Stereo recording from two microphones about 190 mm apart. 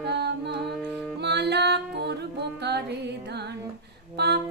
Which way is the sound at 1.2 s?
60° right (ahead or behind).